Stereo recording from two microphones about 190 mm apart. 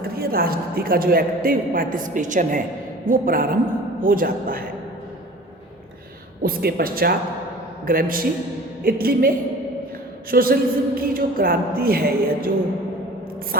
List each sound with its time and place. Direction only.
0.0 s a woman's voice: 50° right (ahead or behind)
6.4 s a woman's voice: 50° right (ahead or behind)
10.3 s a woman's voice: 50° right (ahead or behind)